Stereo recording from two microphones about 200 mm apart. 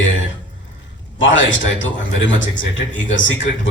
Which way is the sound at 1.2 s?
70° left (ahead or behind).